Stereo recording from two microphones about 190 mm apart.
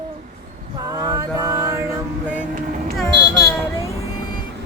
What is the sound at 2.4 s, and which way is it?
Vehicle, 45° right (ahead or behind).